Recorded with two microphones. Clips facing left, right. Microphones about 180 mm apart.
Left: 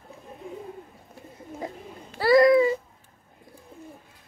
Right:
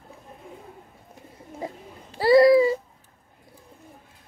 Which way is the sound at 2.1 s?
30° right (ahead or behind).